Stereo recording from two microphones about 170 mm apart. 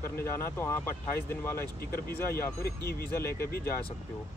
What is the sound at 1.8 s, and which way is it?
Speech, 60° left (ahead or behind).